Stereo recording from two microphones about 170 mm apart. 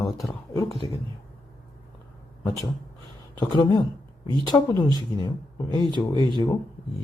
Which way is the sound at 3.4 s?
25° left (ahead or behind).